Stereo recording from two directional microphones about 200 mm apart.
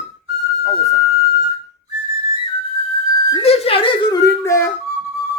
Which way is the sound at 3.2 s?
25° left (ahead or behind).